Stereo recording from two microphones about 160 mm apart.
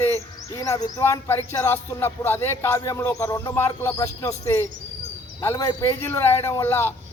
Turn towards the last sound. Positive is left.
turn(degrees=15)  # may be behind; listen again after turning